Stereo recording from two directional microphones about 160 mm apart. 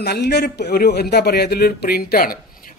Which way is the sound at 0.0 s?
90° left.